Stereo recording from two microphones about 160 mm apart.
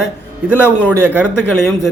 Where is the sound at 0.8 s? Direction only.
15° right (ahead or behind).